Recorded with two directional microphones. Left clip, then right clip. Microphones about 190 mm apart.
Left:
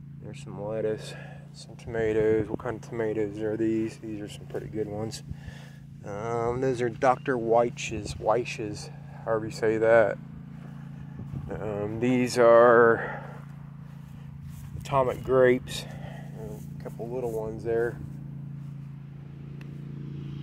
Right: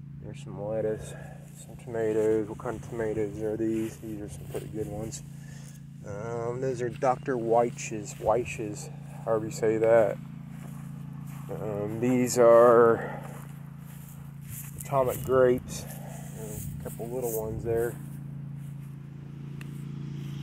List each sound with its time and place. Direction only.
0.6 s speech: 20° left (ahead or behind)
4.7 s speech: 35° left (ahead or behind)
6.5 s speech: 55° left (ahead or behind)
7.0 s speech: 45° left (ahead or behind)
7.5 s speech: 10° left (ahead or behind)
11.5 s speech: 10° left (ahead or behind)
14.9 s speech: 10° left (ahead or behind)
16.3 s a sound: 5° left (ahead or behind)
17.4 s speech: 10° left (ahead or behind)